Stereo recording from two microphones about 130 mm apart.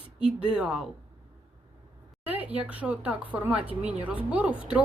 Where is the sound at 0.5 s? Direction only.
5° right (ahead or behind).